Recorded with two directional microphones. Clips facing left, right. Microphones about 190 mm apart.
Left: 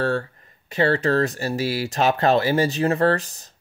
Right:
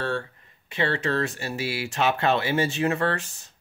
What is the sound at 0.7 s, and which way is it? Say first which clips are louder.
Speech: left 6 dB; 40° left (ahead or behind).